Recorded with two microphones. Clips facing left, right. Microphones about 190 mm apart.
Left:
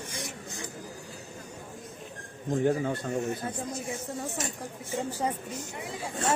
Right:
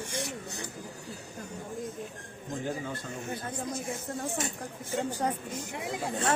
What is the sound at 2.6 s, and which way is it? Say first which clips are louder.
Speech: left 9 dB; 60° left (ahead or behind).